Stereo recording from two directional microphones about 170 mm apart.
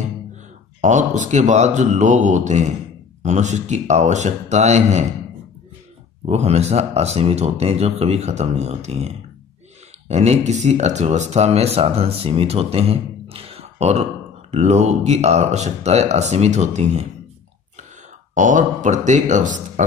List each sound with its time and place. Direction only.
0.7 s speech: 45° right (ahead or behind)
6.2 s speech: 40° right (ahead or behind)
18.3 s speech: 50° right (ahead or behind)